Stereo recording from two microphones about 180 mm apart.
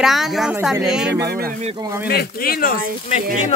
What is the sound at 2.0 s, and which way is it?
Speech, 60° left (ahead or behind).